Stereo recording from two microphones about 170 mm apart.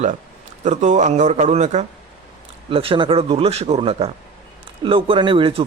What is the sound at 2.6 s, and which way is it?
A man's voice, 30° right (ahead or behind).